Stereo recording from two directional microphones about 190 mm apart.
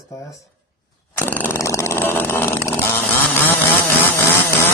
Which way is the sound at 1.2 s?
10° left (ahead or behind).